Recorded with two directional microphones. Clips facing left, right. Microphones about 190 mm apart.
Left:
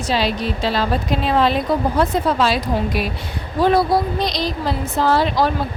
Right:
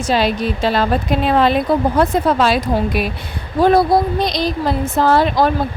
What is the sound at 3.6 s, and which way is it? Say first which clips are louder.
Speech: right 3 dB; 50° right (ahead or behind).